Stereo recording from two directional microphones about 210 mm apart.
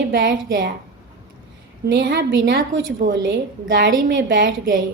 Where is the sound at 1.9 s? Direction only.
50° right (ahead or behind).